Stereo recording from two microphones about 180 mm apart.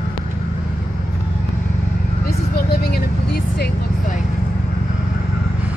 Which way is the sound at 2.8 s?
60° left (ahead or behind).